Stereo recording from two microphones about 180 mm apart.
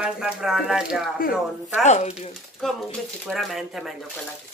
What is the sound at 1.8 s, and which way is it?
Speech, 40° left (ahead or behind).